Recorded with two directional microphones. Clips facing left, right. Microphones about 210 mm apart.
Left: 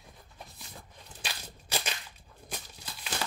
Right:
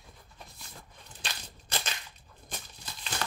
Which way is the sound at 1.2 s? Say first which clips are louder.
Left 1 dB; 10° left (ahead or behind).